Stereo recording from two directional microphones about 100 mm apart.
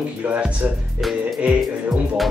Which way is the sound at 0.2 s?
15° right (ahead or behind).